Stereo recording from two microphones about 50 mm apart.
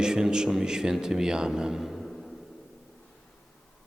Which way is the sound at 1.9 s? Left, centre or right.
Centre.